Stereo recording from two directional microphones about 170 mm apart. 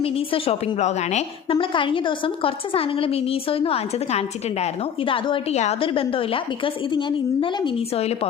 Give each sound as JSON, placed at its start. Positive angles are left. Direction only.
{"t": 0.0, "sound": "a woman's voice", "side_deg": 35}
{"t": 1.5, "sound": "a woman's voice", "side_deg": 30}